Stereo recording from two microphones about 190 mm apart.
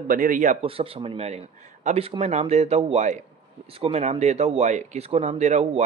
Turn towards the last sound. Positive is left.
turn(degrees=-35)  # may be behind; listen again after turning